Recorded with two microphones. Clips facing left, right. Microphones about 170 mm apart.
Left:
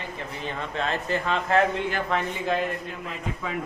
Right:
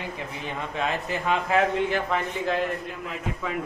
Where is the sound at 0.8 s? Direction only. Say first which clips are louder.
Left 1 dB; 10° right (ahead or behind).